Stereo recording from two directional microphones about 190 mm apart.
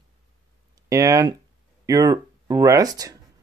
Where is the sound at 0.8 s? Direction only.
15° right (ahead or behind).